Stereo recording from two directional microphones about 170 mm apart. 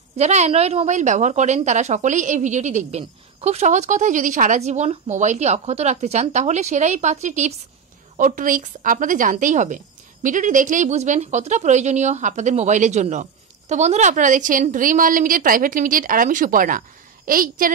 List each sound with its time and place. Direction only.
0.2 s a woman's voice: 40° right (ahead or behind); by 17.6 s 55° right (ahead or behind)